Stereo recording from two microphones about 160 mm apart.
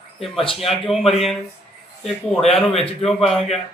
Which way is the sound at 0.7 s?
Centre (ahead or behind).